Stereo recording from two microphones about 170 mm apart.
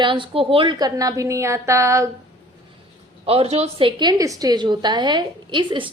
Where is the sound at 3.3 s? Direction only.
35° right (ahead or behind).